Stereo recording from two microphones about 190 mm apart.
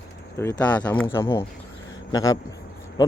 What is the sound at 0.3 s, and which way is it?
Speech, 10° left (ahead or behind).